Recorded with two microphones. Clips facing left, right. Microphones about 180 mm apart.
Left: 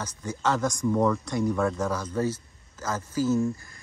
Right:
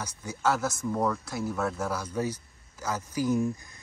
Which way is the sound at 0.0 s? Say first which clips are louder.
Even; 10° right (ahead or behind).